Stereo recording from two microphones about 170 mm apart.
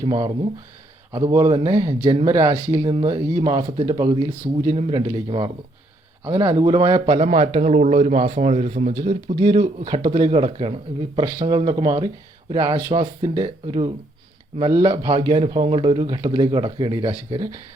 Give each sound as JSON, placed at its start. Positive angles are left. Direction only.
{"t": 0.0, "sound": "a man's voice", "side_deg": -25}
{"t": 6.2, "sound": "speech", "side_deg": -20}
{"t": 7.0, "sound": "a man's voice", "side_deg": -35}
{"t": 9.3, "sound": "speech", "side_deg": -30}